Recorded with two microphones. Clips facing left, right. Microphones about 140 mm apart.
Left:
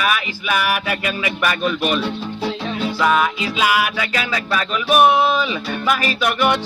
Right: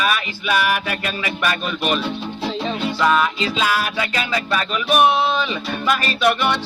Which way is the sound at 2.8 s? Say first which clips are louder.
Left 1 dB; 5° left (ahead or behind).